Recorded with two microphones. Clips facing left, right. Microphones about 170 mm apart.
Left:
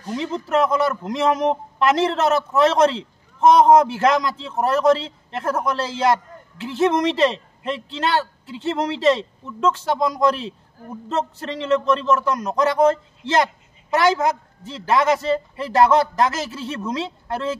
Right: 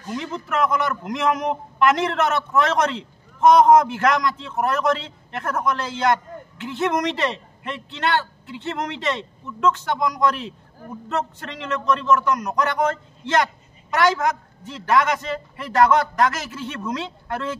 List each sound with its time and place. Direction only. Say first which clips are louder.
0.0 s a man's voice: left 3 dB; 30° left (ahead or behind)